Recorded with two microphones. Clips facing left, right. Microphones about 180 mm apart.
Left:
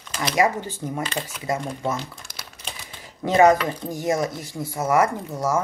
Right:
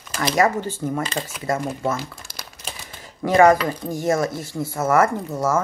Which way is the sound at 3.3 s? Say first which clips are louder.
Right 2 dB; 20° left (ahead or behind).